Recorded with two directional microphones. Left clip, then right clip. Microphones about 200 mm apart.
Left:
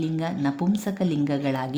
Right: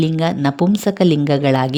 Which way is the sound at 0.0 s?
45° right (ahead or behind).